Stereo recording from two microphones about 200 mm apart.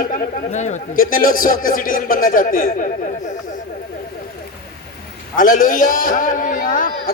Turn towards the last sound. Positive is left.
turn(degrees=45)  # may be behind; listen again after turning